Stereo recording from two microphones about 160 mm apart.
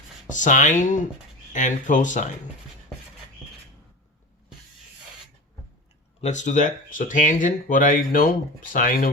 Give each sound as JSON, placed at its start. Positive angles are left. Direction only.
{"t": 0.3, "sound": "speech", "side_deg": 50}
{"t": 6.2, "sound": "speech", "side_deg": 50}